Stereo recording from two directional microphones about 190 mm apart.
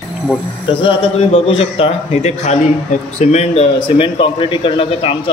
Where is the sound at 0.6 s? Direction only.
25° left (ahead or behind).